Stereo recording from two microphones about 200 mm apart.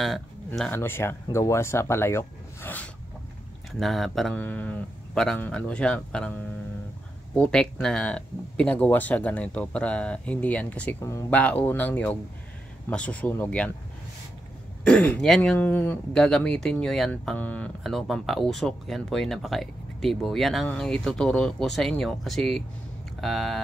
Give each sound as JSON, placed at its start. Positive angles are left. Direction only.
{"t": 0.0, "sound": "speech", "side_deg": 0}
{"t": 14.9, "sound": "speech", "side_deg": 5}